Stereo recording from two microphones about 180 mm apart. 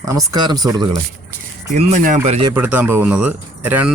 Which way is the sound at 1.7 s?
40° right (ahead or behind).